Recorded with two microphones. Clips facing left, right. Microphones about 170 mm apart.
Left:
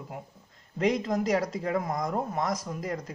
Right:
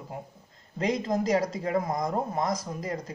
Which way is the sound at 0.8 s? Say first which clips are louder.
Left 1 dB; 35° right (ahead or behind).